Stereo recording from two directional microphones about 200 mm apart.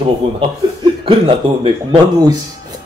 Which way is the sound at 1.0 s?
25° right (ahead or behind).